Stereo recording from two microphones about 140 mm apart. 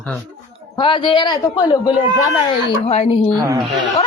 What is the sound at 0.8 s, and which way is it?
Speech, 35° left (ahead or behind).